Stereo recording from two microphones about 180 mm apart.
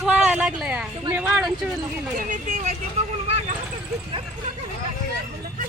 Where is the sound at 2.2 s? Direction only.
45° right (ahead or behind).